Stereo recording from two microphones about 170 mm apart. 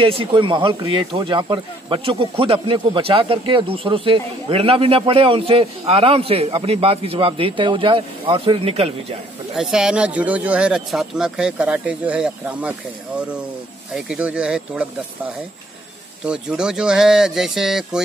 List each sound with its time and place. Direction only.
0.2 s speech: 30° right (ahead or behind)
9.6 s speech: 5° right (ahead or behind)
16.3 s speech: 5° right (ahead or behind)